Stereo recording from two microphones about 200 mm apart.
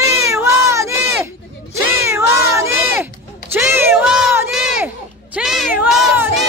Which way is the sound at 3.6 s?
10° right (ahead or behind).